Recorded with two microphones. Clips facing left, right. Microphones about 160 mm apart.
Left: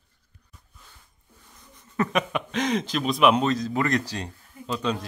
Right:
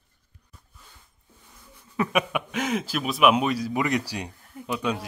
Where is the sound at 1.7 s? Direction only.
10° right (ahead or behind).